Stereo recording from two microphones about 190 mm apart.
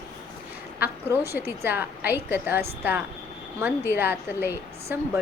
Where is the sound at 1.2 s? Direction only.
55° left (ahead or behind).